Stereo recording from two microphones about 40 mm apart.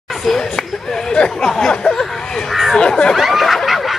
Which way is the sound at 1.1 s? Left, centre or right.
Left.